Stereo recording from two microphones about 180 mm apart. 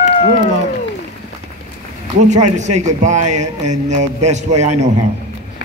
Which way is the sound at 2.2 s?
40° right (ahead or behind).